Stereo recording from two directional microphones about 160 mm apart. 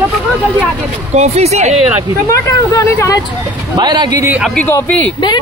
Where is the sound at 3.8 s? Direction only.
25° right (ahead or behind).